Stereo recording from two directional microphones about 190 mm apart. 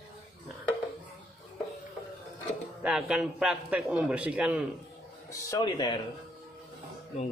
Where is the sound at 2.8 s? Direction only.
5° right (ahead or behind).